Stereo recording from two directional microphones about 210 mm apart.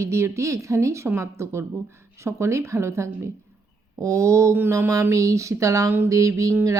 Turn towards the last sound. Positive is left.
turn(degrees=-15)  # may be behind; listen again after turning